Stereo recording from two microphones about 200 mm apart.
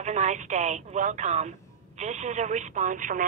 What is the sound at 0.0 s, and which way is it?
A woman's voice, 35° right (ahead or behind).